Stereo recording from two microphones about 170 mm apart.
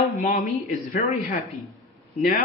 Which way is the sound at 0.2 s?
50° left (ahead or behind).